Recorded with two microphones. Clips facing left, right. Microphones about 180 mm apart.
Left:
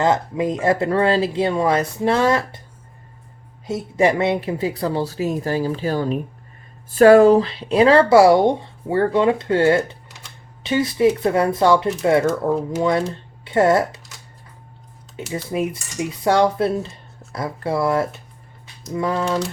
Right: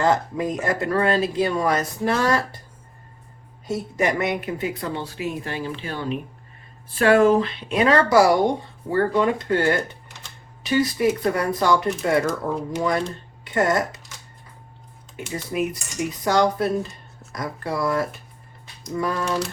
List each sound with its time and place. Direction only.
0.0 s speech: 20° left (ahead or behind)
3.7 s speech: 25° left (ahead or behind)
15.1 s speech: 25° left (ahead or behind)